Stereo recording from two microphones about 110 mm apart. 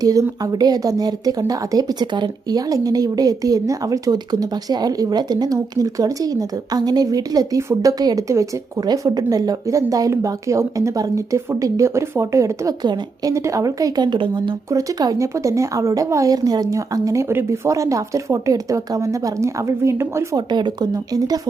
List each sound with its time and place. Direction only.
0.0 s a woman's voice: 30° right (ahead or behind)
14.7 s a woman's voice: 30° right (ahead or behind)
20.3 s speech: 40° right (ahead or behind)